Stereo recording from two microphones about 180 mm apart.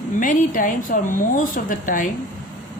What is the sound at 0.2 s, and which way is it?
Speech, 50° left (ahead or behind).